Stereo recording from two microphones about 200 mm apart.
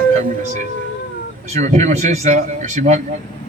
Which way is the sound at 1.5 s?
35° right (ahead or behind).